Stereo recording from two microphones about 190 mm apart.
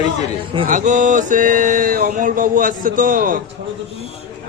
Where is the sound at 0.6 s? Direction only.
40° right (ahead or behind).